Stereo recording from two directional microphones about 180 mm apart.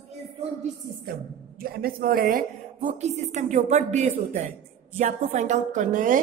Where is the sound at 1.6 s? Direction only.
55° right (ahead or behind).